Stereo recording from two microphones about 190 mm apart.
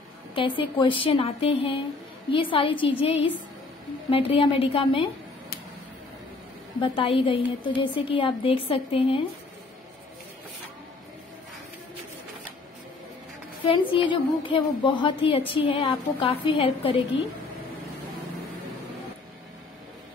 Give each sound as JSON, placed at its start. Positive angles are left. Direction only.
{"t": 0.3, "sound": "a woman's voice", "side_deg": 25}
{"t": 6.8, "sound": "a woman's voice", "side_deg": 25}
{"t": 13.7, "sound": "a woman's voice", "side_deg": 25}